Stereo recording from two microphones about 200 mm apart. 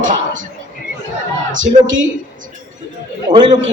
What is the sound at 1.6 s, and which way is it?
Speech, 40° right (ahead or behind).